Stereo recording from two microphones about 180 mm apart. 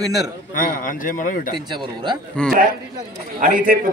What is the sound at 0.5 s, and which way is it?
Speech, 50° left (ahead or behind).